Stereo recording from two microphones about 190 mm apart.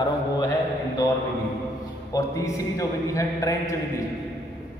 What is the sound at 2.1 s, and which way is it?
A man's voice, 15° left (ahead or behind).